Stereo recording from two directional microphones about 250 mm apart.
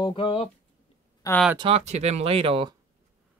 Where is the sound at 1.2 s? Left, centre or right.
Centre.